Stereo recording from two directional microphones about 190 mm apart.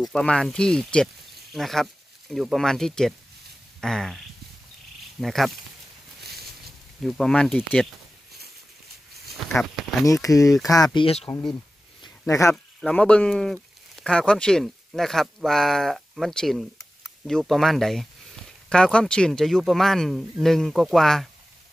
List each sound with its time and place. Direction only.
0.0 s speech: 5° left (ahead or behind)
5.2 s speech: centre (ahead or behind)
7.0 s speech: centre (ahead or behind)
9.4 s speech: centre (ahead or behind)
10.0 s speech: 15° left (ahead or behind)
12.0 s a sound: 15° left (ahead or behind)
12.8 s speech: 5° left (ahead or behind)